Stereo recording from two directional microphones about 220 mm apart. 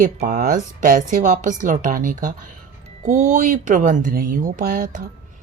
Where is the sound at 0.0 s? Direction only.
35° right (ahead or behind).